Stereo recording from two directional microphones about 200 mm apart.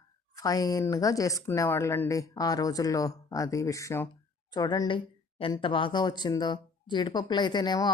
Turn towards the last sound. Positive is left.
turn(degrees=20)  # may be behind; listen again after turning